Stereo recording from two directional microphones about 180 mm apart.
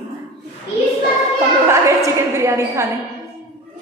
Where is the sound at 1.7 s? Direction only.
15° right (ahead or behind).